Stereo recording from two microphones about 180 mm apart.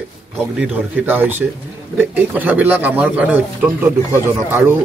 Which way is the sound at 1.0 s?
10° right (ahead or behind).